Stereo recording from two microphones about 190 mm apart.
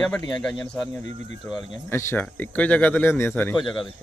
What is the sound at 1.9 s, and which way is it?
Speech, 15° left (ahead or behind).